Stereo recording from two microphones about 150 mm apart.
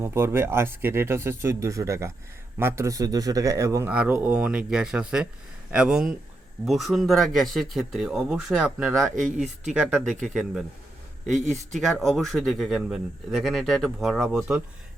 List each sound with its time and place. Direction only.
0.0 s speech: 15° right (ahead or behind)
3.9 s speech: 10° right (ahead or behind)
11.7 s speech: centre (ahead or behind)